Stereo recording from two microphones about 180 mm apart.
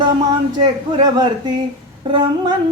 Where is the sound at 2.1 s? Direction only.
25° right (ahead or behind).